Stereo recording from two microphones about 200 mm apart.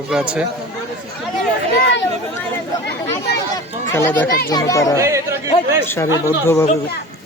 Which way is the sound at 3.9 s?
10° left (ahead or behind).